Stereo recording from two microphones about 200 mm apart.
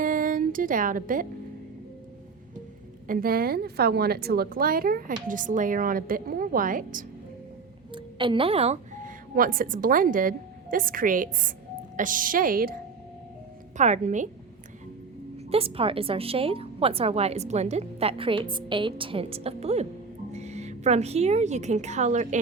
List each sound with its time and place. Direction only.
0.0 s music: 40° right (ahead or behind)
3.1 s a woman's voice: 45° right (ahead or behind)
7.9 s a woman's voice: 25° right (ahead or behind); by 12.7 s 45° right (ahead or behind)
13.7 s a woman's voice: 35° right (ahead or behind)
15.4 s a woman's voice: 30° right (ahead or behind)